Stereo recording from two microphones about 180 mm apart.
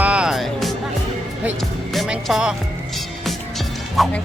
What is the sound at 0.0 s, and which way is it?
Music, 5° right (ahead or behind).